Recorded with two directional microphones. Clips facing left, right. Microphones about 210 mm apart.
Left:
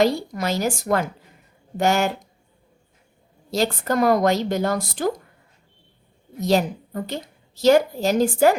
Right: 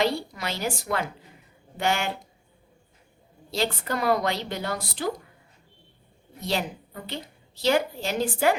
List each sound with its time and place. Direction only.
0.0 s a woman's voice: 45° left (ahead or behind)
3.5 s a woman's voice: 45° left (ahead or behind)
6.4 s a woman's voice: 45° left (ahead or behind)